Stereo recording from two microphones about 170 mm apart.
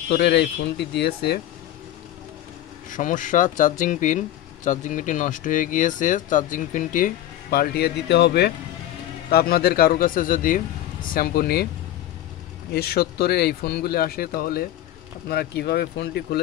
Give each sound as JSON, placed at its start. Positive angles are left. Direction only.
{"t": 0.1, "sound": "speech", "side_deg": 80}
{"t": 2.9, "sound": "speech", "side_deg": 50}
{"t": 7.5, "sound": "speech", "side_deg": 65}
{"t": 9.3, "sound": "speech", "side_deg": 65}
{"t": 11.1, "sound": "speech", "side_deg": 65}
{"t": 12.7, "sound": "speech", "side_deg": 65}